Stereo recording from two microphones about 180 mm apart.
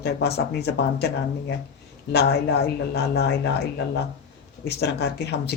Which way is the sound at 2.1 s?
65° left (ahead or behind).